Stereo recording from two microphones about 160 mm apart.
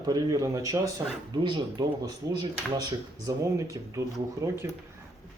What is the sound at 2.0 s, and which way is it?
Speech, 25° right (ahead or behind).